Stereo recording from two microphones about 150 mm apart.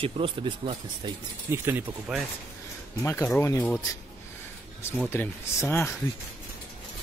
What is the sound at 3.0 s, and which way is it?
Speech, 15° left (ahead or behind).